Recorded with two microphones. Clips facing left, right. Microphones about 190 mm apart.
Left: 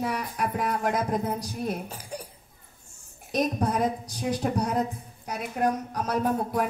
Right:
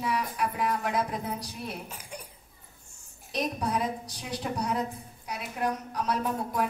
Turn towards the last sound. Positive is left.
turn(degrees=45)  # may be behind; listen again after turning